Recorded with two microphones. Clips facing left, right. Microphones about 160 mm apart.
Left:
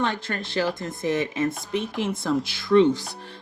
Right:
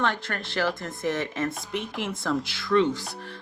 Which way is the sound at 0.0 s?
15° left (ahead or behind).